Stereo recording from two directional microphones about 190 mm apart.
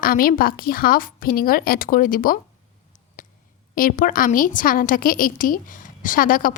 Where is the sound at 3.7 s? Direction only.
45° left (ahead or behind).